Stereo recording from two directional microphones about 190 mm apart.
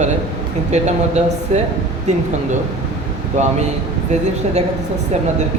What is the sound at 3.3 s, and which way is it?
Speech, 40° right (ahead or behind).